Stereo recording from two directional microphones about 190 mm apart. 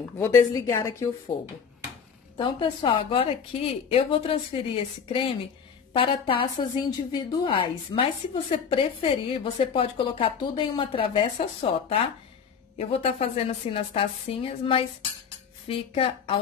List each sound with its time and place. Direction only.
0.2 s a woman's voice: 15° left (ahead or behind)
2.3 s a woman's voice: 25° left (ahead or behind)
12.7 s a woman's voice: 30° left (ahead or behind)